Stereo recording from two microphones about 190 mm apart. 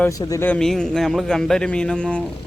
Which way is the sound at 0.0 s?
20° left (ahead or behind).